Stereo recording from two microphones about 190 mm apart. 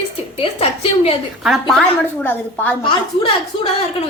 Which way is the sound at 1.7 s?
5° left (ahead or behind).